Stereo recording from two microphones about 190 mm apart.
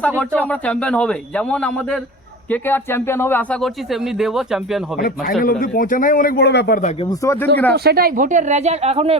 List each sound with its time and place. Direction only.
0.3 s a man's voice: 5° left (ahead or behind)
4.9 s speech: 50° left (ahead or behind)
7.1 s a man's voice: 15° left (ahead or behind)
7.7 s speech: 55° right (ahead or behind); by 9.1 s 30° right (ahead or behind)